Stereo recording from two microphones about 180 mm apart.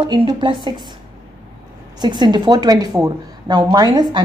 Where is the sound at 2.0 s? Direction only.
25° right (ahead or behind).